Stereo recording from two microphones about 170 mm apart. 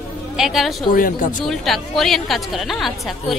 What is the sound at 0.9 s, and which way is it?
Speech, 50° left (ahead or behind).